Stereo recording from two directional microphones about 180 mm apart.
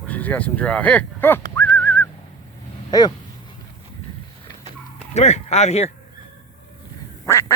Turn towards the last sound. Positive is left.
turn(degrees=15)  # may be behind; listen again after turning